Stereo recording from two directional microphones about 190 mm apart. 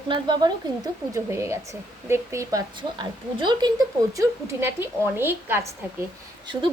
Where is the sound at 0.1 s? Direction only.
25° right (ahead or behind).